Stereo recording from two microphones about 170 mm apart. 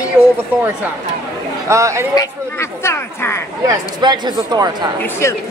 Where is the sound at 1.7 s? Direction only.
15° right (ahead or behind).